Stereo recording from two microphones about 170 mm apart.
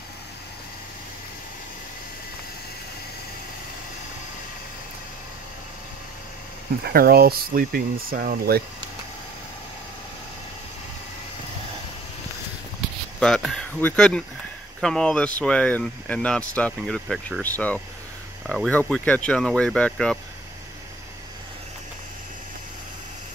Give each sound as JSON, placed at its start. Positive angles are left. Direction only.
{"t": 6.8, "sound": "speech", "side_deg": -65}
{"t": 13.2, "sound": "speech", "side_deg": 0}